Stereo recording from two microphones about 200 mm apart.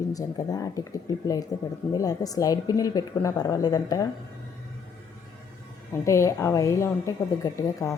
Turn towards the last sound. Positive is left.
turn(degrees=15)  # may be behind; listen again after turning